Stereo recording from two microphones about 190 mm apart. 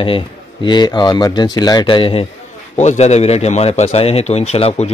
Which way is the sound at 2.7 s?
40° left (ahead or behind).